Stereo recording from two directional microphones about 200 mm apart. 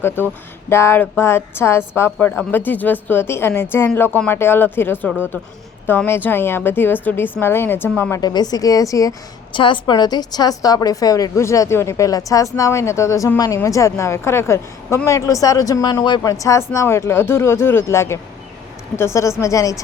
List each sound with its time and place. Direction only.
0.2 s a woman's voice: 10° left (ahead or behind)